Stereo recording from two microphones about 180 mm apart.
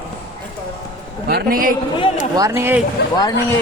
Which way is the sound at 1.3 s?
60° right (ahead or behind).